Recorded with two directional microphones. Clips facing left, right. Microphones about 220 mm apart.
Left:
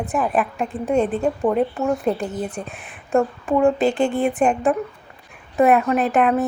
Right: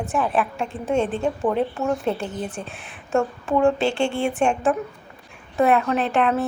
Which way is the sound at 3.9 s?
35° left (ahead or behind).